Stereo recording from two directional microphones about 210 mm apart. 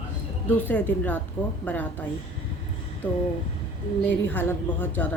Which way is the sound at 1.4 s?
25° left (ahead or behind).